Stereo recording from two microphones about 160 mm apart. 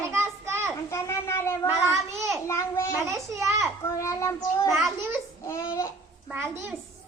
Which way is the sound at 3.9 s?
20° left (ahead or behind).